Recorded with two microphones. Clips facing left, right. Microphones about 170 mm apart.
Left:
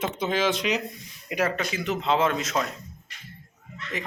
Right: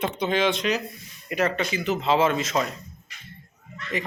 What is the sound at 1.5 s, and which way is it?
A man's voice, centre (ahead or behind).